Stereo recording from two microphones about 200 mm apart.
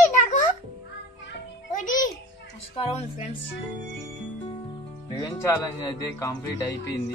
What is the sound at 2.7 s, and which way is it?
Speech, 30° left (ahead or behind).